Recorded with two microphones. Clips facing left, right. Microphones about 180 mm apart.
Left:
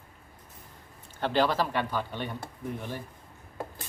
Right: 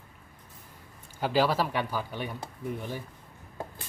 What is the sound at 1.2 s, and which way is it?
Speech, 5° right (ahead or behind).